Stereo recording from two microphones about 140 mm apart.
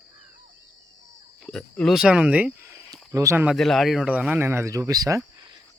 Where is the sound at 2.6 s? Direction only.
20° right (ahead or behind).